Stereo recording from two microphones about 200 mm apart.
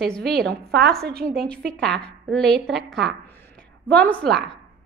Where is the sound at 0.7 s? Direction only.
55° right (ahead or behind).